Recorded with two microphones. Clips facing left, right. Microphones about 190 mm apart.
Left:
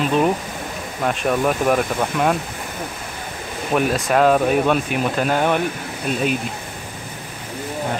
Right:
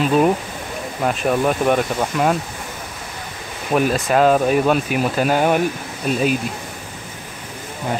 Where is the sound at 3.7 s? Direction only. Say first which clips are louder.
Right 1 dB; centre (ahead or behind).